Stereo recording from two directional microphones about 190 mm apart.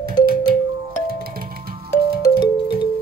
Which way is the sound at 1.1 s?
50° right (ahead or behind).